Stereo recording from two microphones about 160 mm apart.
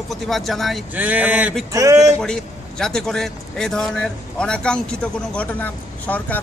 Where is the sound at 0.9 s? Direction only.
10° right (ahead or behind).